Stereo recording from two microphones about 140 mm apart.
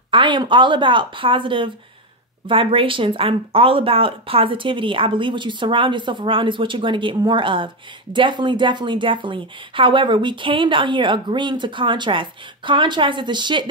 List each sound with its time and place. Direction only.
0.1 s speech: 35° right (ahead or behind)